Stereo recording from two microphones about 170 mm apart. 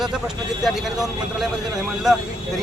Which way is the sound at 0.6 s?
Centre (ahead or behind).